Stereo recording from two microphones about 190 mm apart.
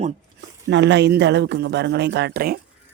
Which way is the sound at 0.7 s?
65° right (ahead or behind).